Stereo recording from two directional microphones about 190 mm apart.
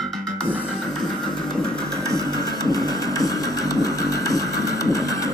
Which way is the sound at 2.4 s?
20° left (ahead or behind).